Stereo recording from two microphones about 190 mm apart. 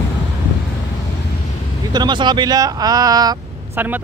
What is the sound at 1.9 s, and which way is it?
Speech, 25° right (ahead or behind).